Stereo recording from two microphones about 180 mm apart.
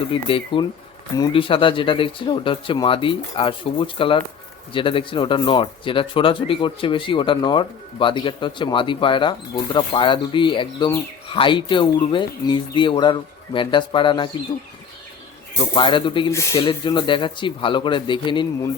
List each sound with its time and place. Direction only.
0.3 s speech: 30° left (ahead or behind)
15.7 s speech: 25° left (ahead or behind)
16.3 s speech: 15° left (ahead or behind)
16.6 s speech: 30° left (ahead or behind)